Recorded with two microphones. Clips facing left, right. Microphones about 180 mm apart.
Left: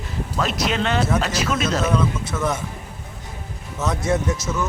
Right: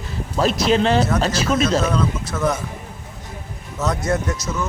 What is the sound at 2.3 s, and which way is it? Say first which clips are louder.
Speech: right 4 dB; 5° left (ahead or behind).